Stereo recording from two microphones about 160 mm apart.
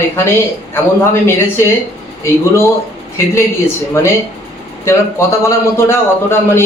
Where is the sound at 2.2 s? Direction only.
15° left (ahead or behind).